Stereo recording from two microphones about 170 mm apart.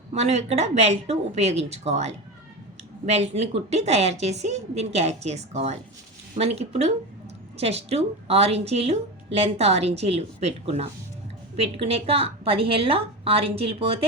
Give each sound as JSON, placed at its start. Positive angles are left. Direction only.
{"t": 0.1, "sound": "speech", "side_deg": -40}